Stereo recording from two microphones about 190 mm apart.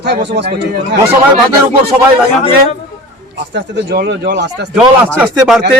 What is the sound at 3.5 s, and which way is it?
Speech, 60° right (ahead or behind).